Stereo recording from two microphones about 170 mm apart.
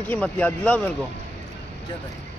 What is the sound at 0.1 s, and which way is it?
Speech, 10° left (ahead or behind).